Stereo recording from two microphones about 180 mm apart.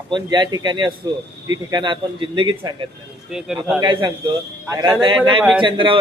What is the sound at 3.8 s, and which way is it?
A man's voice, 25° right (ahead or behind).